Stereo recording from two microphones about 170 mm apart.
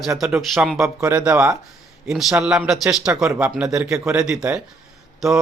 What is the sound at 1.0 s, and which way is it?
Speech, 20° right (ahead or behind).